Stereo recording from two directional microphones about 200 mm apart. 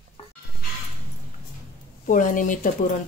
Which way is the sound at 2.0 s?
45° left (ahead or behind).